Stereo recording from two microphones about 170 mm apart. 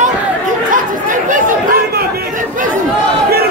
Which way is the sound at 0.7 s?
50° right (ahead or behind).